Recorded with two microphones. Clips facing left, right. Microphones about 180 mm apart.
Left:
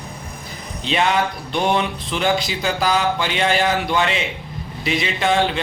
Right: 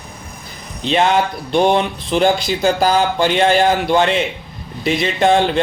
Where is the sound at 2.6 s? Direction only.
40° right (ahead or behind).